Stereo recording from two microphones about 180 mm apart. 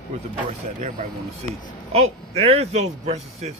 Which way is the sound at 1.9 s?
35° right (ahead or behind).